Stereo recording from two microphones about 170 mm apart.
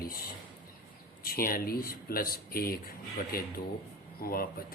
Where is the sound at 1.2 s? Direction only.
60° left (ahead or behind).